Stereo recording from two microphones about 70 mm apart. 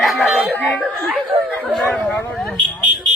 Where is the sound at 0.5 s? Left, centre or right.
Left.